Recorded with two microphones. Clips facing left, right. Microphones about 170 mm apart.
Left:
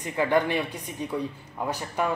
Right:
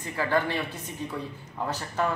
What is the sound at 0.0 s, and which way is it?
Speech, 20° left (ahead or behind).